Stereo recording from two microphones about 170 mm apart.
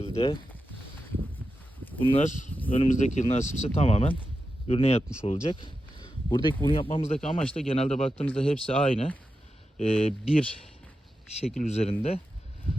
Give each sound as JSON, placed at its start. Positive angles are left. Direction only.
{"t": 0.0, "sound": "a sound", "side_deg": 35}
{"t": 2.0, "sound": "speech", "side_deg": 30}
{"t": 2.2, "sound": "speech", "side_deg": 45}
{"t": 2.6, "sound": "speech", "side_deg": 35}
{"t": 2.9, "sound": "speech", "side_deg": 45}
{"t": 11.3, "sound": "speech", "side_deg": 40}